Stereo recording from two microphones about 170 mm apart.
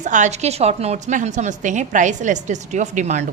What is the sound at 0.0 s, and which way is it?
A woman's voice, 45° right (ahead or behind).